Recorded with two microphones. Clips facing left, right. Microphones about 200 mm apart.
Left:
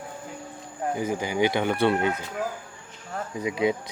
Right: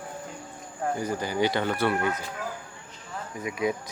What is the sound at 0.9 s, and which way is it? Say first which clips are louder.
Speech: left 3 dB; 15° left (ahead or behind).